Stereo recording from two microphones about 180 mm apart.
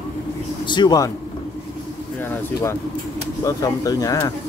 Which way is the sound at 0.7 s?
25° left (ahead or behind).